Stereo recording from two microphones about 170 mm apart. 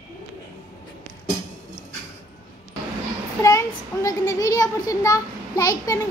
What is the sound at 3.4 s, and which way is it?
A child's voice, 20° left (ahead or behind).